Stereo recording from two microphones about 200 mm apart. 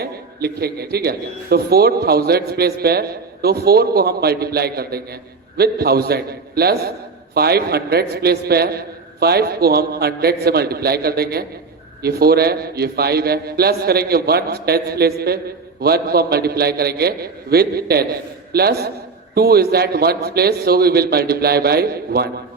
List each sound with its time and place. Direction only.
0.0 s a man's voice: 50° right (ahead or behind)